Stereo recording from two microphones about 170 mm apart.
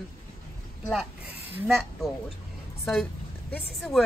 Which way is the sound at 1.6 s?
Centre (ahead or behind).